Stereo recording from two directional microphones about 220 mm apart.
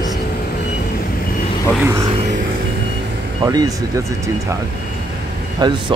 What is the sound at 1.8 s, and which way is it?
Speech, 10° right (ahead or behind).